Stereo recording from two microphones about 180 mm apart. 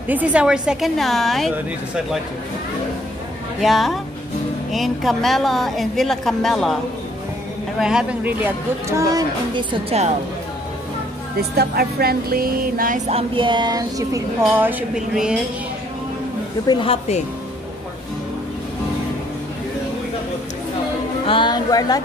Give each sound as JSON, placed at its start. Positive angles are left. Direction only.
{"t": 0.1, "sound": "a woman's voice", "side_deg": -10}
{"t": 3.6, "sound": "a woman's voice", "side_deg": 0}
{"t": 7.8, "sound": "speech", "side_deg": -5}
{"t": 9.6, "sound": "music", "side_deg": -30}
{"t": 11.5, "sound": "music", "side_deg": -60}
{"t": 16.6, "sound": "a woman's voice", "side_deg": 30}
{"t": 21.3, "sound": "speech", "side_deg": 25}